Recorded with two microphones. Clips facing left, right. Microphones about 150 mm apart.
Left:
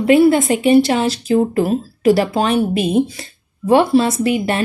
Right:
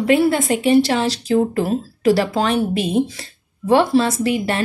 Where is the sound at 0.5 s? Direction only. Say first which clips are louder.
Left 2 dB; 15° left (ahead or behind).